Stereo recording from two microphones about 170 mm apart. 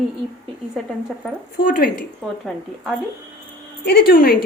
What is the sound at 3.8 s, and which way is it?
Speech, 65° left (ahead or behind).